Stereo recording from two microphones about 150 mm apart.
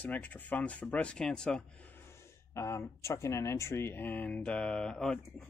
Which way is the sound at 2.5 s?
20° left (ahead or behind).